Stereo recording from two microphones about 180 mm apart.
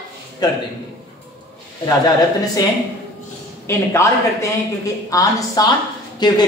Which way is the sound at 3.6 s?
15° left (ahead or behind).